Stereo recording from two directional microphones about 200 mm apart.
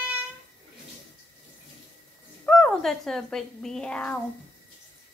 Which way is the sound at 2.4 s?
Centre (ahead or behind).